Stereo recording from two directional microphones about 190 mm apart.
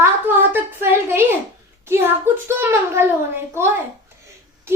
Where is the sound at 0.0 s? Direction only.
10° right (ahead or behind).